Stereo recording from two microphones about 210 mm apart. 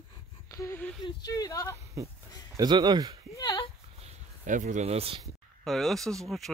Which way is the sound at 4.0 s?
35° right (ahead or behind).